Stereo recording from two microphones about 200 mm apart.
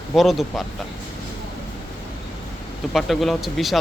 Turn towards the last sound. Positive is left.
turn(degrees=0)  # may be behind; listen again after turning